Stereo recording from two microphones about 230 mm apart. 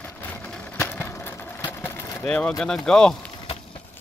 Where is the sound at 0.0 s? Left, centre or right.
Centre.